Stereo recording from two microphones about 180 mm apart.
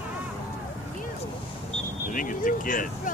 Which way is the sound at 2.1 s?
50° left (ahead or behind).